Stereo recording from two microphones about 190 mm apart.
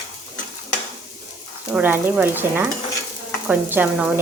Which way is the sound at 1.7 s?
10° right (ahead or behind).